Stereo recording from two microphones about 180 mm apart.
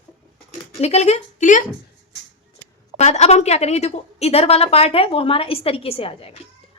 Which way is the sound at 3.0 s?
40° left (ahead or behind).